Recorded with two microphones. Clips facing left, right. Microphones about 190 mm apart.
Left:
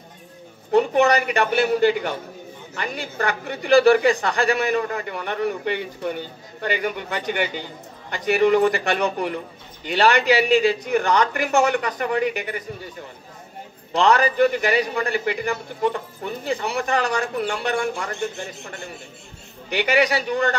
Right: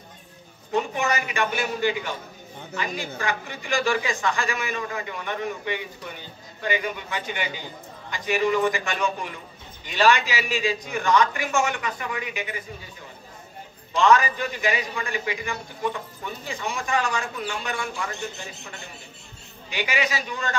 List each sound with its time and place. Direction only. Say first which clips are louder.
0.7 s a woman's voice: left 8 dB; 65° left (ahead or behind)
13.9 s a woman's voice: left 2 dB; 65° left (ahead or behind)
19.7 s a woman's voice: left 7 dB; 65° left (ahead or behind)